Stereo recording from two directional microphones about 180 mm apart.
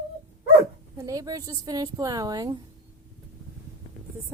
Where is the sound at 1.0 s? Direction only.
20° right (ahead or behind).